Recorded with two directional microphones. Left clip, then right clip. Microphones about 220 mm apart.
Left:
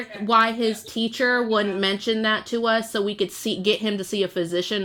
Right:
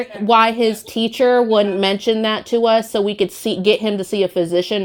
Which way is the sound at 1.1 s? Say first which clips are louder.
Right 7 dB; 10° left (ahead or behind).